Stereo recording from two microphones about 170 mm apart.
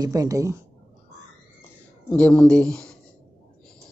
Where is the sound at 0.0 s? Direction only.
20° right (ahead or behind).